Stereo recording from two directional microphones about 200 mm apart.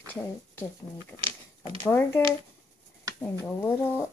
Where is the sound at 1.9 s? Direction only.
10° left (ahead or behind).